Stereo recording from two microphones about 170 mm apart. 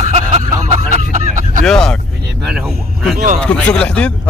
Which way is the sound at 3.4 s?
5° left (ahead or behind).